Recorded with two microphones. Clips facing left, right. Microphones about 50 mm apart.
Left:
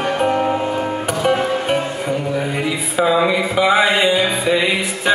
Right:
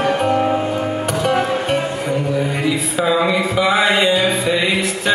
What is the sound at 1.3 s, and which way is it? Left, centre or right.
Music, right.